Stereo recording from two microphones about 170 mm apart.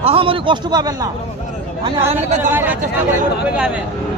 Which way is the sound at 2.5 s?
10° right (ahead or behind).